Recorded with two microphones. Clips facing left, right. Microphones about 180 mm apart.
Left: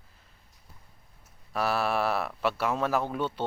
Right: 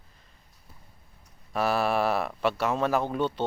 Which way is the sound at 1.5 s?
Centre (ahead or behind).